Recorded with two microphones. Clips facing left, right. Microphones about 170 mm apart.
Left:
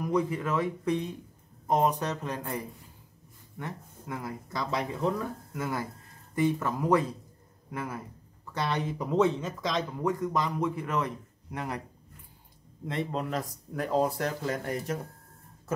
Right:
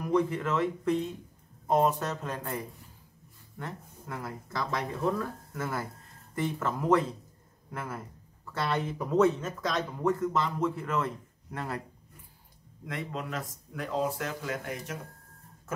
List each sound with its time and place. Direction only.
0.0 s speech: 10° left (ahead or behind)
3.5 s speech: 15° left (ahead or behind)
9.2 s speech: 5° right (ahead or behind)
10.0 s speech: 15° left (ahead or behind)
12.8 s speech: 30° left (ahead or behind)